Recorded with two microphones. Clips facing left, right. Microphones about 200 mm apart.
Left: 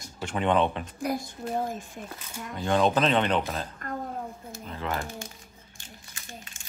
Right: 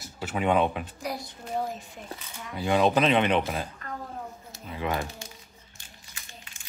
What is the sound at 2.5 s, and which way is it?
Speech, 10° right (ahead or behind).